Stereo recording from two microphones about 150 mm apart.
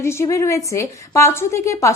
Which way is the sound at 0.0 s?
15° left (ahead or behind).